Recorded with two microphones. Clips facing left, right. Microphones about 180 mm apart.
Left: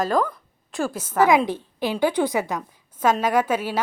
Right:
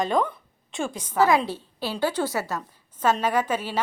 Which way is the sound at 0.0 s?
Centre (ahead or behind).